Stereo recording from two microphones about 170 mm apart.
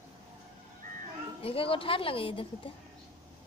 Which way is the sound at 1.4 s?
35° left (ahead or behind).